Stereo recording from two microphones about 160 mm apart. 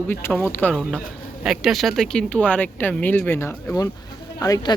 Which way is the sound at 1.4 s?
Centre (ahead or behind).